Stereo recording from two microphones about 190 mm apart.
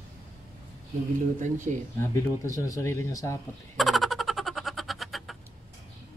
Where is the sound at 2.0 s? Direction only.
15° left (ahead or behind).